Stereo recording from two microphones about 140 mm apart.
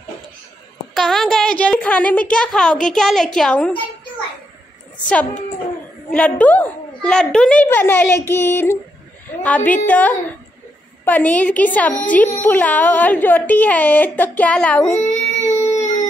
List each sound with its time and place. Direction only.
0.9 s a woman's voice: centre (ahead or behind)
4.9 s a child's voice: 10° left (ahead or behind)
15.0 s a sound: 55° left (ahead or behind)